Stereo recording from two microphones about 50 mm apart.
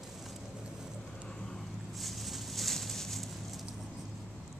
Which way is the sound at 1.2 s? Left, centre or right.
Centre.